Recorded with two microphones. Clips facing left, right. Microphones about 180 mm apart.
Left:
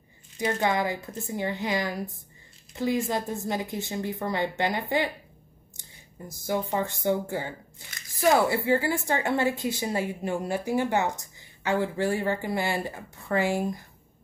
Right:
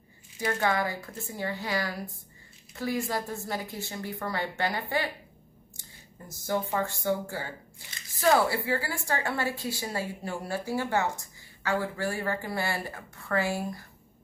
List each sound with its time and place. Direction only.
0.4 s a woman's voice: 20° left (ahead or behind)
6.2 s a woman's voice: 15° left (ahead or behind)